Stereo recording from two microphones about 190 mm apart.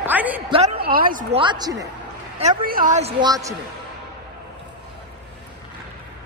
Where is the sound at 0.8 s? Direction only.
50° right (ahead or behind).